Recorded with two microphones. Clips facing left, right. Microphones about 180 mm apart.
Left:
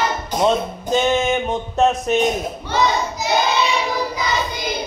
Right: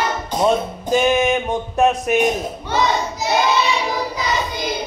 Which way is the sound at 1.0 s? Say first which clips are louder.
Right 1 dB; 15° right (ahead or behind).